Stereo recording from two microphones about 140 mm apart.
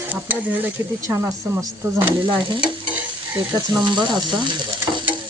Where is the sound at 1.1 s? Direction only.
20° right (ahead or behind).